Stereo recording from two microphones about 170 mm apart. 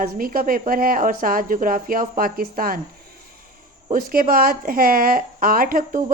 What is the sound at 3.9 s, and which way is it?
Speech, 55° right (ahead or behind).